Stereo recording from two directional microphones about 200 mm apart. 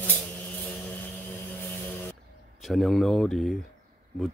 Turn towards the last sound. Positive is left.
turn(degrees=0)  # may be behind; listen again after turning